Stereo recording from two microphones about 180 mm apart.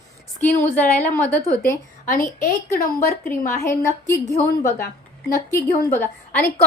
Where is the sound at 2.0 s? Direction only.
50° left (ahead or behind).